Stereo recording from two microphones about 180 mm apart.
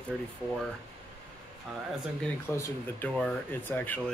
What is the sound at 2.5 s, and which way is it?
Speech, 15° left (ahead or behind).